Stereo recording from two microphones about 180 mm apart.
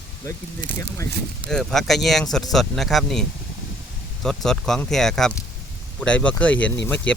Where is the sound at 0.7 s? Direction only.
15° left (ahead or behind).